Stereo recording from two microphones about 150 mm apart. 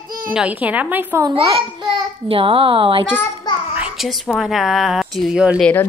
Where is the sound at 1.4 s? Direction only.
30° right (ahead or behind).